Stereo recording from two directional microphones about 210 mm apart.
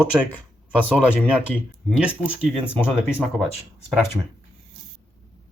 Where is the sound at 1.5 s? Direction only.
5° left (ahead or behind).